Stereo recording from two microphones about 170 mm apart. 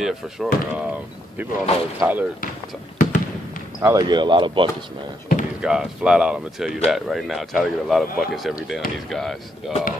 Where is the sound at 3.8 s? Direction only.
20° right (ahead or behind).